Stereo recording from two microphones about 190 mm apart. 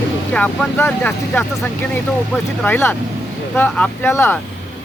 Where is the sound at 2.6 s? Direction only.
10° left (ahead or behind).